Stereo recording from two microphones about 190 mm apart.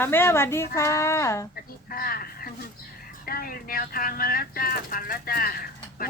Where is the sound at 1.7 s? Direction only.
50° left (ahead or behind).